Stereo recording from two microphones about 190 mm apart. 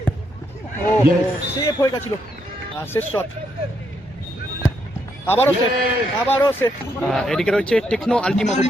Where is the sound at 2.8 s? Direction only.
10° left (ahead or behind).